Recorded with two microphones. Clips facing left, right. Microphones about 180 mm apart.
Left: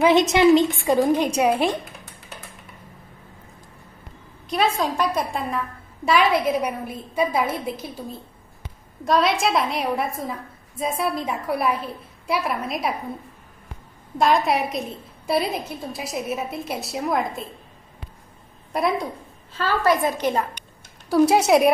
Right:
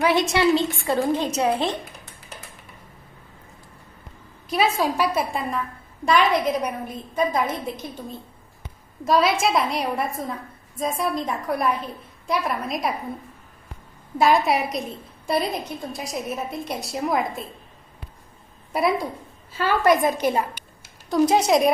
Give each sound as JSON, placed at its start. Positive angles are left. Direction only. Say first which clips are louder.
{"t": 0.0, "sound": "a woman's voice", "louder": "left 4 dB", "side_deg": 20}
{"t": 4.5, "sound": "a woman's voice", "louder": "even", "side_deg": -5}
{"t": 9.0, "sound": "a woman's voice", "louder": "even", "side_deg": 0}
{"t": 14.1, "sound": "a woman's voice", "louder": "right 1 dB", "side_deg": -5}
{"t": 18.7, "sound": "a woman's voice", "louder": "right 1 dB", "side_deg": 0}
{"t": 19.5, "sound": "a woman's voice", "louder": "right 2 dB", "side_deg": -15}
{"t": 21.1, "sound": "a woman's voice", "louder": "left 2 dB", "side_deg": 5}